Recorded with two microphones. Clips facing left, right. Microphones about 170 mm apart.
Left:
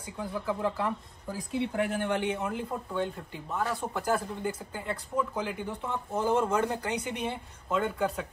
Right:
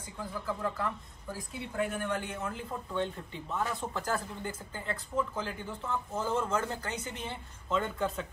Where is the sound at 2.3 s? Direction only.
15° left (ahead or behind).